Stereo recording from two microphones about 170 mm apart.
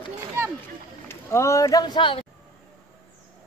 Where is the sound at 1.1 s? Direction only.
15° left (ahead or behind).